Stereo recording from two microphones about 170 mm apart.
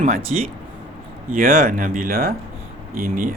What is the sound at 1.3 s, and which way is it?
Speech, 55° right (ahead or behind).